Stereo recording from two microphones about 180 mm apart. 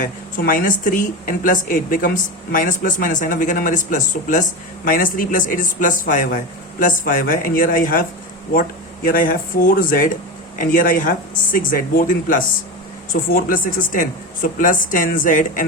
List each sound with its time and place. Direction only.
0.0 s speech: 50° left (ahead or behind)
9.0 s speech: 50° left (ahead or behind)